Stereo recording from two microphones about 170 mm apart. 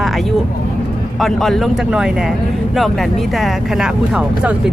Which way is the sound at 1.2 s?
Centre (ahead or behind).